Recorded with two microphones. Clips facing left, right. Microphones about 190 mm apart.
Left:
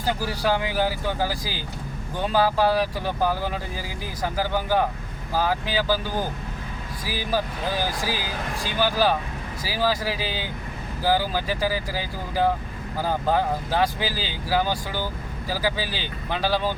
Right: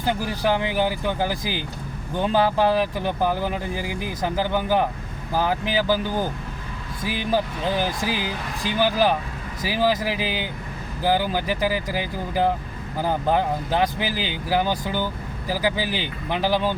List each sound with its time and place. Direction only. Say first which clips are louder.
0.0 s speech: right 2 dB; 20° right (ahead or behind)
7.0 s speech: right 3 dB; 20° right (ahead or behind)